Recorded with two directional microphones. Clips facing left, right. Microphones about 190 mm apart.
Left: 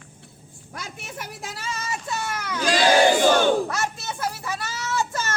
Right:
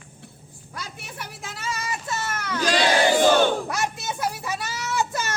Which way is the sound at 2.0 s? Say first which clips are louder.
Even; 15° left (ahead or behind).